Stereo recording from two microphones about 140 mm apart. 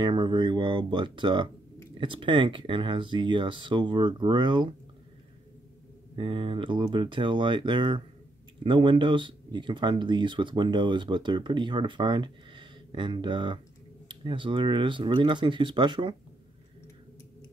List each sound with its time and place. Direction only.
0.0 s speech: 35° right (ahead or behind)
6.1 s speech: 35° right (ahead or behind)